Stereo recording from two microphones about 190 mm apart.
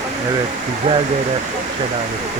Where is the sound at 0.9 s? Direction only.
35° right (ahead or behind).